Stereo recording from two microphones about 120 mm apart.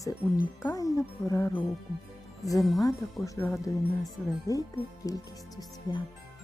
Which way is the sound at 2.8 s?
25° left (ahead or behind).